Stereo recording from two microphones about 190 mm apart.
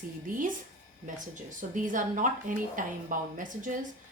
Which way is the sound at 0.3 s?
45° right (ahead or behind).